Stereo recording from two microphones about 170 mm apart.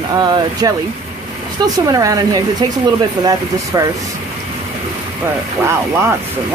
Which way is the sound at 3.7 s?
20° right (ahead or behind).